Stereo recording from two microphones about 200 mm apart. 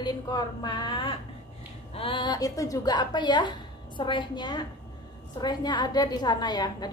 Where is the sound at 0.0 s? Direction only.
20° left (ahead or behind).